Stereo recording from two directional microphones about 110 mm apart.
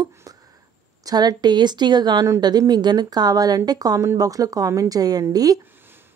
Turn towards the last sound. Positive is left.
turn(degrees=-35)  # may be behind; listen again after turning